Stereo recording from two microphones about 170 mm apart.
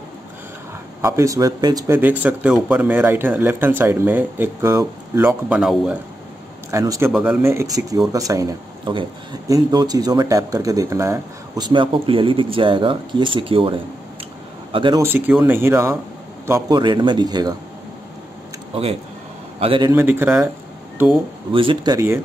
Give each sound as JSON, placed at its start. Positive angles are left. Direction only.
{"t": 1.0, "sound": "speech", "side_deg": -20}
{"t": 2.0, "sound": "speech", "side_deg": -10}
{"t": 6.7, "sound": "speech", "side_deg": -20}
{"t": 15.0, "sound": "speech", "side_deg": -10}
{"t": 19.6, "sound": "speech", "side_deg": -30}
{"t": 19.9, "sound": "speech", "side_deg": -15}
{"t": 21.5, "sound": "speech", "side_deg": -30}
{"t": 21.9, "sound": "speech", "side_deg": -15}